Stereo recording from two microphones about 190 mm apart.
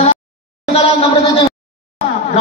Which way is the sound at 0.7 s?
30° left (ahead or behind).